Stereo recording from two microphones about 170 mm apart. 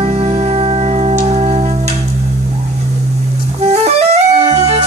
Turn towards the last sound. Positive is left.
turn(degrees=-40)  # may be behind; listen again after turning